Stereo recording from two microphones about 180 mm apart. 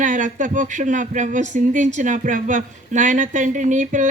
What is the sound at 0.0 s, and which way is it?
Speech, 45° right (ahead or behind).